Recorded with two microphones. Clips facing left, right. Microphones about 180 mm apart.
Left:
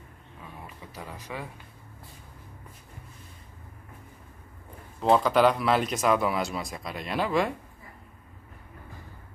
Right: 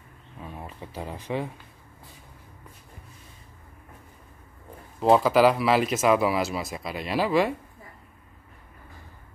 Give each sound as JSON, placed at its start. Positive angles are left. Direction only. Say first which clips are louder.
{"t": 0.7, "sound": "speech", "louder": "right 6 dB", "side_deg": -30}
{"t": 5.0, "sound": "speech", "louder": "right 3 dB", "side_deg": -5}